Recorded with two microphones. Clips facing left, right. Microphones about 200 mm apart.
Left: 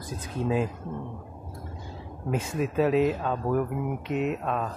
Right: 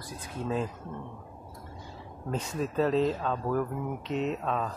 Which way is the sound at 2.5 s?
10° left (ahead or behind).